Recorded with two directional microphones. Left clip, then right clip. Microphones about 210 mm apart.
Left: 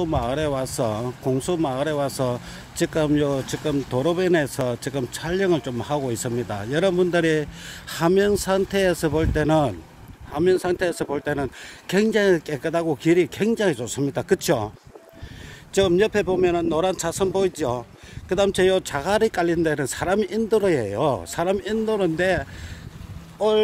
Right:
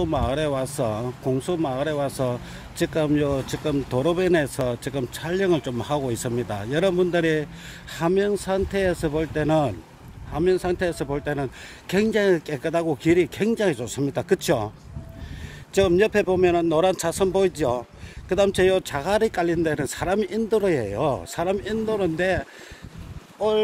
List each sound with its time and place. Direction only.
0.0 s speech: 5° left (ahead or behind)
15.7 s speech: 5° left (ahead or behind); by 23.5 s 25° left (ahead or behind)